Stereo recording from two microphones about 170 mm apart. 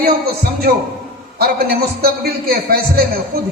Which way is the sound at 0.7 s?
65° right (ahead or behind).